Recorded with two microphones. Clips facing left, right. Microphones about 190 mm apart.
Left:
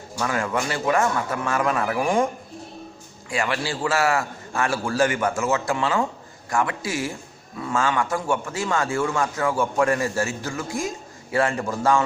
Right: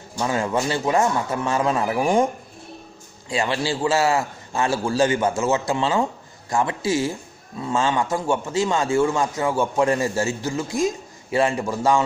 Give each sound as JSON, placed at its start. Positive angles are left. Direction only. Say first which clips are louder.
{"t": 0.2, "sound": "a man's voice", "louder": "right 2 dB", "side_deg": -25}
{"t": 3.3, "sound": "a man's voice", "louder": "right 3 dB", "side_deg": -25}